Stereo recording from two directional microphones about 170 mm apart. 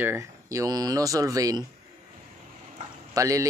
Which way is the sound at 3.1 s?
20° right (ahead or behind).